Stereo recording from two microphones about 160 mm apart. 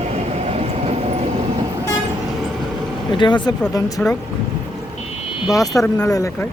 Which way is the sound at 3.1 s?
30° left (ahead or behind).